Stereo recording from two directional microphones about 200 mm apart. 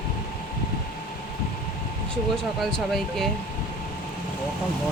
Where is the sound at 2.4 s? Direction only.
Centre (ahead or behind).